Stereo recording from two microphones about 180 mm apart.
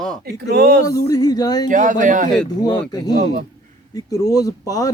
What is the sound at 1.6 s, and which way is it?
Speech, 45° right (ahead or behind).